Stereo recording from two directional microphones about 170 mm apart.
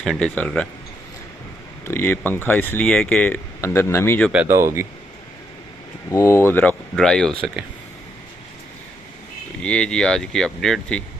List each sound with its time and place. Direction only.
0.0 s speech: 5° left (ahead or behind)
1.9 s speech: 10° left (ahead or behind)
4.3 s speech: 10° right (ahead or behind)
6.0 s speech: 15° left (ahead or behind)
9.6 s speech: 5° left (ahead or behind)